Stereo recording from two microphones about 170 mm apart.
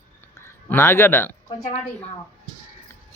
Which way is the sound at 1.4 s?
40° left (ahead or behind).